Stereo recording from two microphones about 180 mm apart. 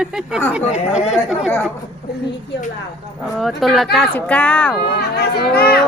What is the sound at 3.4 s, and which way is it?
Speech, centre (ahead or behind).